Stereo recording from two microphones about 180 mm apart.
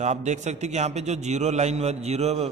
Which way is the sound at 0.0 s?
40° right (ahead or behind).